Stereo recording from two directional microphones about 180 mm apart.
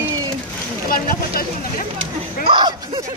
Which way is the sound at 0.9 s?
55° left (ahead or behind).